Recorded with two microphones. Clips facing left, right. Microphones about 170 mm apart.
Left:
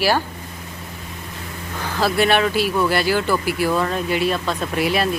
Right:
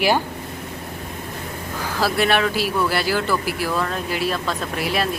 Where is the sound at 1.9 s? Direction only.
Centre (ahead or behind).